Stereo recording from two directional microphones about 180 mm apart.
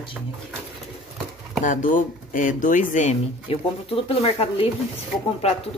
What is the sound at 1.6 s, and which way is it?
Speech, 45° left (ahead or behind).